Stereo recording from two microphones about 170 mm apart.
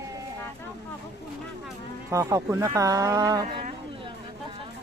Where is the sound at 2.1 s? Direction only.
20° right (ahead or behind).